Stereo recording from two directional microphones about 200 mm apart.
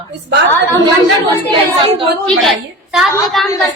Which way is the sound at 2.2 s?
Centre (ahead or behind).